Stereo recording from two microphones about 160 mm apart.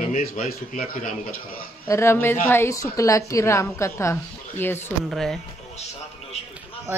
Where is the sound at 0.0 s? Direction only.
55° left (ahead or behind).